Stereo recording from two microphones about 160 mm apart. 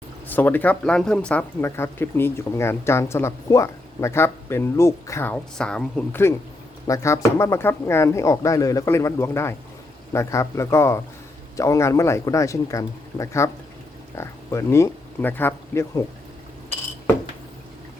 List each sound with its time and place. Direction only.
0.3 s speech: 10° left (ahead or behind)